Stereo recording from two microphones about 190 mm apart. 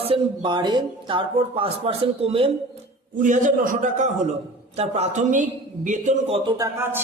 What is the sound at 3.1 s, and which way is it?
A man's voice, 40° right (ahead or behind).